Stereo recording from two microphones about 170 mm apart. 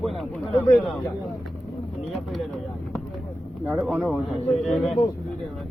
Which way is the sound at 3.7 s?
Centre (ahead or behind).